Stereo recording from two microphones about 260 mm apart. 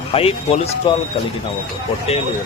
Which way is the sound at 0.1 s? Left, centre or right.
Left.